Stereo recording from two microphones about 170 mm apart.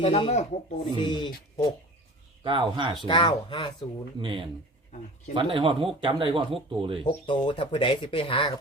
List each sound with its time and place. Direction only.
0.0 s speech: 35° left (ahead or behind)
0.9 s speech: 30° left (ahead or behind)
2.4 s speech: 30° right (ahead or behind)
3.1 s speech: 30° left (ahead or behind)
4.2 s speech: 30° right (ahead or behind)
7.0 s speech: 30° left (ahead or behind)